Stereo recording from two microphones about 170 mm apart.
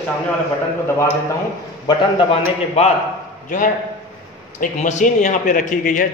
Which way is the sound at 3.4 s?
50° left (ahead or behind).